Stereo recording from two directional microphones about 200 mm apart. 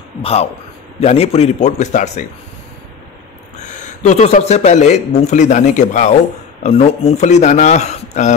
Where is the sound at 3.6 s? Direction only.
35° left (ahead or behind).